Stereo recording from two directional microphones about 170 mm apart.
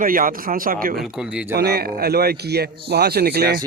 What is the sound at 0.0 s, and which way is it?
Speech, 55° right (ahead or behind).